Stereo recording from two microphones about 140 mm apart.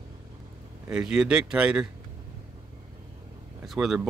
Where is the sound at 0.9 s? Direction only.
5° right (ahead or behind).